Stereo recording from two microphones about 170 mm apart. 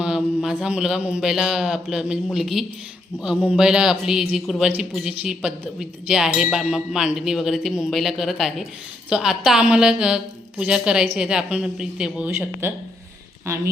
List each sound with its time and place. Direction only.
0.0 s a man's voice: 5° right (ahead or behind)